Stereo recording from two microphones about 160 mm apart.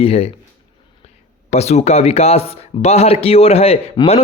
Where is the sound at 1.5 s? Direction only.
40° left (ahead or behind).